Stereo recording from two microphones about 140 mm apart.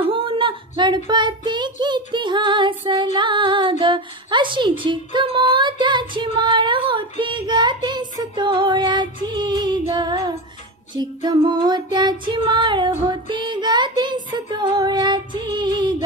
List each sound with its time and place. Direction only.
0.0 s child singing: 40° right (ahead or behind)
2.9 s female singing: 35° right (ahead or behind)
11.0 s music: 30° right (ahead or behind)